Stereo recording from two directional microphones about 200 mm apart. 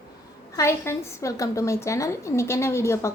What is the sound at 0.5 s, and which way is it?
A woman's voice, 15° left (ahead or behind).